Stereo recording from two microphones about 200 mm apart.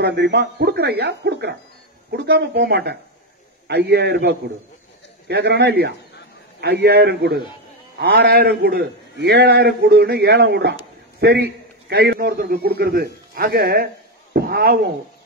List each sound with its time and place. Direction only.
0.0 s a man's voice: 55° right (ahead or behind)